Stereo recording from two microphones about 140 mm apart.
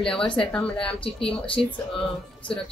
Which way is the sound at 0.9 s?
40° left (ahead or behind).